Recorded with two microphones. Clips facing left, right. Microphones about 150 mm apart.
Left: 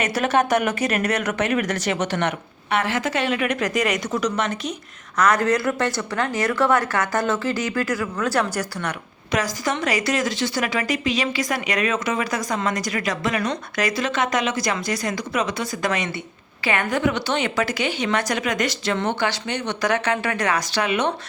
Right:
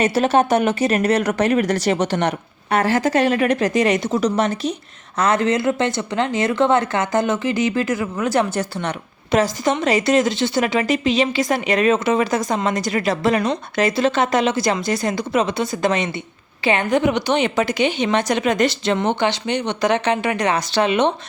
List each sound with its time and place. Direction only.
0.0 s speech: 30° right (ahead or behind)